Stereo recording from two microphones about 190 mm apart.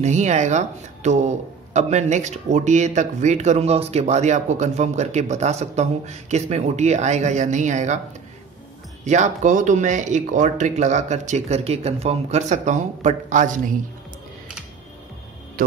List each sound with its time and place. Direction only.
0.0 s speech: 40° right (ahead or behind)
9.0 s speech: 40° right (ahead or behind)